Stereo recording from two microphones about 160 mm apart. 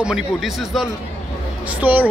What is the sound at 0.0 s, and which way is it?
A man's voice, centre (ahead or behind).